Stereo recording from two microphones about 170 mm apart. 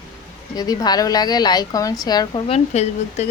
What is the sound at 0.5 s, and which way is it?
A woman's voice, 20° left (ahead or behind).